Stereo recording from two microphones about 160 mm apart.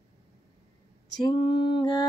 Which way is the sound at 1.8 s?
30° left (ahead or behind).